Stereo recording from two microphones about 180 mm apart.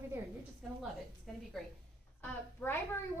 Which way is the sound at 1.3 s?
Centre (ahead or behind).